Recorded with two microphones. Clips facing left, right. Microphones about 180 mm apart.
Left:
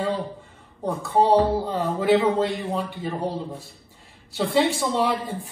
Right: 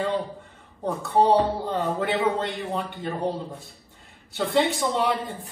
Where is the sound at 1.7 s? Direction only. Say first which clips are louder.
Left 5 dB; 5° left (ahead or behind).